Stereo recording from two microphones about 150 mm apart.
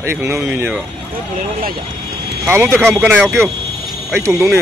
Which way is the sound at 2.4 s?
15° right (ahead or behind).